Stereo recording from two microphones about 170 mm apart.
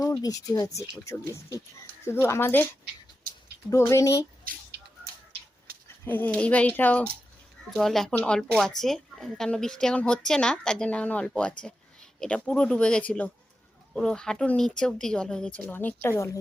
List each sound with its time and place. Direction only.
0.0 s speech: 20° left (ahead or behind)
3.7 s speech: 20° left (ahead or behind)
6.1 s speech: 10° left (ahead or behind)